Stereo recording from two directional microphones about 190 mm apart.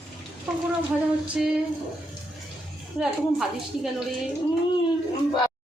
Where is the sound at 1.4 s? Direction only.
5° right (ahead or behind).